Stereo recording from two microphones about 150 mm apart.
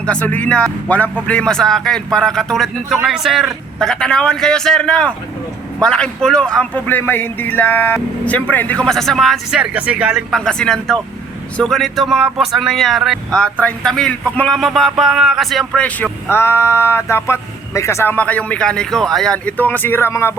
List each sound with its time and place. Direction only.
0.0 s speech: 10° left (ahead or behind)